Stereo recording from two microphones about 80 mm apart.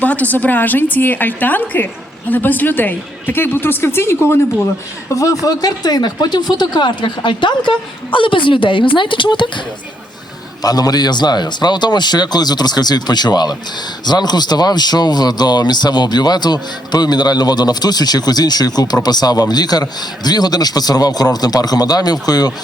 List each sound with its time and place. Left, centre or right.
0.0 s speech: centre
5.0 s speech: left
10.6 s speech: left